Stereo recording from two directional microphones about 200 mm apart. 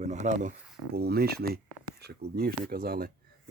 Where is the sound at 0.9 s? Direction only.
50° right (ahead or behind).